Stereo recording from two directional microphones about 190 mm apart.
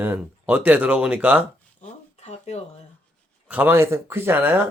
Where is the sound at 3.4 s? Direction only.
10° right (ahead or behind).